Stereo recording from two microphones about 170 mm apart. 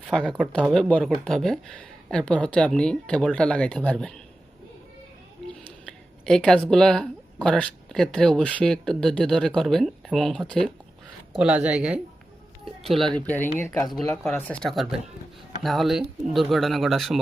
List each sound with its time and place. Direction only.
0.0 s speech: 5° left (ahead or behind)
5.6 s a sound: 5° left (ahead or behind)
7.4 s speech: 5° left (ahead or behind)
11.3 s speech: 5° right (ahead or behind)
13.1 s speech: 10° left (ahead or behind)